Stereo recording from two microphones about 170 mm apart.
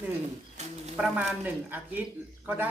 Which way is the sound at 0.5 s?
40° right (ahead or behind).